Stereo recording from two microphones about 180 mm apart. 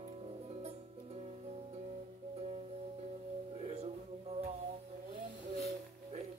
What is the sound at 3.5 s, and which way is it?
Music, 35° right (ahead or behind).